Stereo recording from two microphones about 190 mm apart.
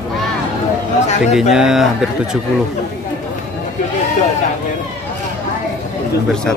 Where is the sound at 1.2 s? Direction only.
Centre (ahead or behind).